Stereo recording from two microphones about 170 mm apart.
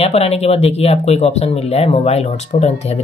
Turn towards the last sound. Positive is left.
turn(degrees=40)  # may be behind; listen again after turning